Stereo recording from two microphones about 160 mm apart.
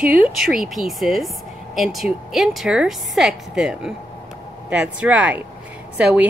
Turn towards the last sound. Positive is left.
turn(degrees=-10)  # may be behind; listen again after turning